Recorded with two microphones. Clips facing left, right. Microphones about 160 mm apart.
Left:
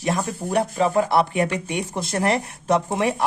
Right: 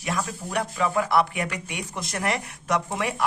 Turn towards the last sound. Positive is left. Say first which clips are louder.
# left 6 dB
turn(degrees=30)  # may be behind; listen again after turning